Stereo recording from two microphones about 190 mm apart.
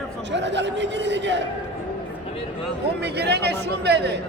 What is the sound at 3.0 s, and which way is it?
Speech, 60° right (ahead or behind).